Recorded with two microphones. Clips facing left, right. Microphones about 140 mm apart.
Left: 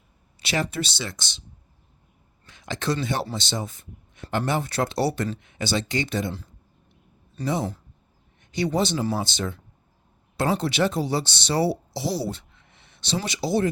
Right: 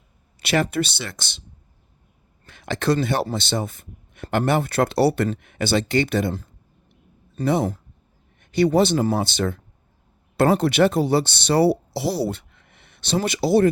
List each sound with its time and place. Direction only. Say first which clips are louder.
0.4 s a man's voice: right 6 dB; 55° right (ahead or behind)
2.5 s a man's voice: right 6 dB; 60° right (ahead or behind)
7.4 s a man's voice: right 5 dB; 55° right (ahead or behind)
12.5 s a sound: right 2 dB; 55° right (ahead or behind)